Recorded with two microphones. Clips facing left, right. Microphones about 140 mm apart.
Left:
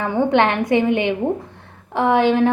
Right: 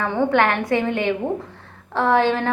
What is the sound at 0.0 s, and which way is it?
A woman's voice, 20° left (ahead or behind).